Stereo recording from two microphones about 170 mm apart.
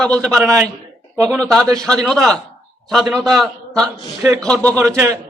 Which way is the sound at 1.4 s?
5° left (ahead or behind).